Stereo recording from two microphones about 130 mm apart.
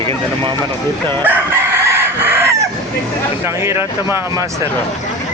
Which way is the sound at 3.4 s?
20° right (ahead or behind).